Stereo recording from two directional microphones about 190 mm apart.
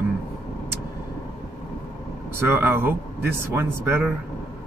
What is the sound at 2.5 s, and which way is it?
Speech, 10° right (ahead or behind).